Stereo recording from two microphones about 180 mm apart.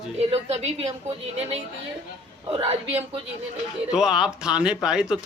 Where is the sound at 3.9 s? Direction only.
5° right (ahead or behind).